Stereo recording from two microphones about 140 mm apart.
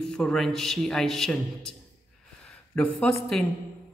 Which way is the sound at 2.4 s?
10° left (ahead or behind).